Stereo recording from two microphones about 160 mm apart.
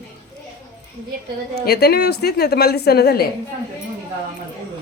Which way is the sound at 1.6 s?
80° left.